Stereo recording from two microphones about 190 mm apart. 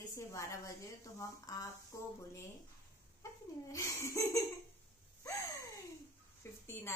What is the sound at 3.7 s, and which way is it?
Speech, 15° left (ahead or behind).